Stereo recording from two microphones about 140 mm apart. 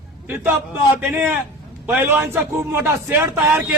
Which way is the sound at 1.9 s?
10° right (ahead or behind).